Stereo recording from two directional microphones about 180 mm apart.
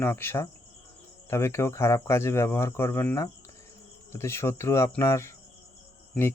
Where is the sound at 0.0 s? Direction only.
15° left (ahead or behind).